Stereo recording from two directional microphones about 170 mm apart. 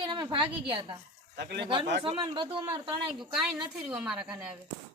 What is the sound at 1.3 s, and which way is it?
Speech, 90° right.